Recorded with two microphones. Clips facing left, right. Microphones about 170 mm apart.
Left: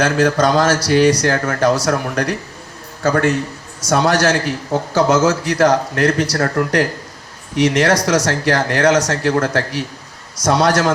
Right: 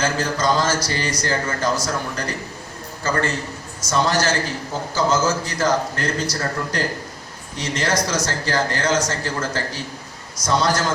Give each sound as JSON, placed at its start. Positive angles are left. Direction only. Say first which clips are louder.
{"t": 0.0, "sound": "a man's voice", "louder": "left 7 dB", "side_deg": 75}